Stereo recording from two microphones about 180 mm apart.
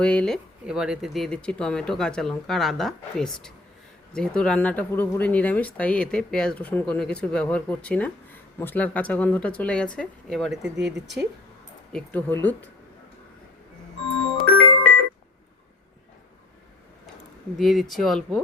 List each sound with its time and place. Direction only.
0.0 s speech: 5° left (ahead or behind)
14.5 s music: 35° right (ahead or behind)
17.6 s speech: centre (ahead or behind)